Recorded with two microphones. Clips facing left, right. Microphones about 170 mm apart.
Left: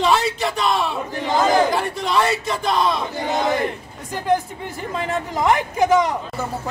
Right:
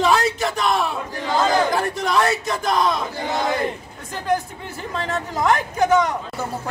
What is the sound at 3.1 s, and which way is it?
Battle cry, 20° left (ahead or behind).